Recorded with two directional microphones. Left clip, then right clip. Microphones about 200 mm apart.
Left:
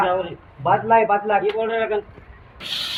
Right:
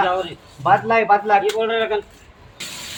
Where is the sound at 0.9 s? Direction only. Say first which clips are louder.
Right 1 dB; 25° right (ahead or behind).